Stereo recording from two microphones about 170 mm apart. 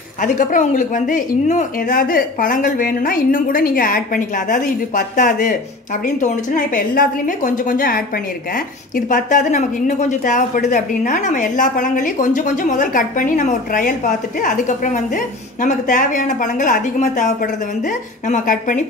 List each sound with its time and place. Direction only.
0.2 s a woman's voice: 50° left (ahead or behind)